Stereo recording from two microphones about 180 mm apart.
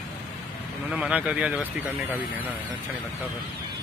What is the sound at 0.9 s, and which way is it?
Speech, 5° right (ahead or behind).